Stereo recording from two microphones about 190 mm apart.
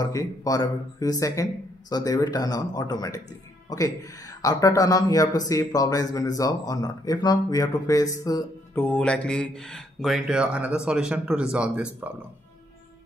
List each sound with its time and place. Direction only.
0.0 s speech: 20° left (ahead or behind); by 12.1 s 5° right (ahead or behind)